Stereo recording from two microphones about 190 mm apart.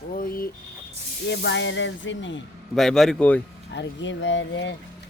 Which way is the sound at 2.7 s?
Centre (ahead or behind).